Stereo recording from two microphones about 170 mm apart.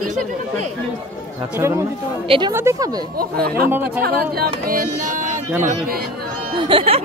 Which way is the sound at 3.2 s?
65° right (ahead or behind).